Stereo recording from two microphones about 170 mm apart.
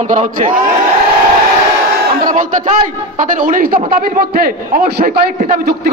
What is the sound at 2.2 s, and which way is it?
A man's voice, 50° right (ahead or behind).